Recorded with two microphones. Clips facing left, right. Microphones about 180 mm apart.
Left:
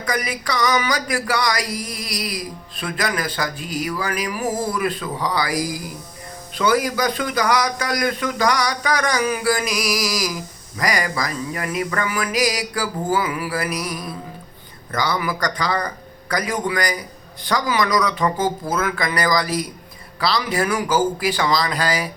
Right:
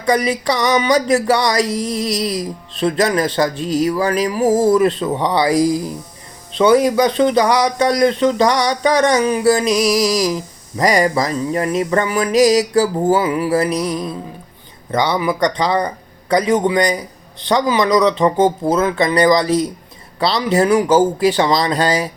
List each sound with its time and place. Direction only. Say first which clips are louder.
0.0 s a man's voice: right 9 dB; 30° right (ahead or behind)
4.4 s speech: right 11 dB; 90° right
5.1 s a man's voice: right 7 dB; 25° right (ahead or behind)